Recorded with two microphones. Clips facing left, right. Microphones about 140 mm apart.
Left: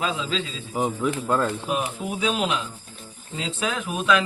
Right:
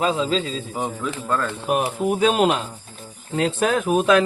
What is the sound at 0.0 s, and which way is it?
Speech, 35° right (ahead or behind).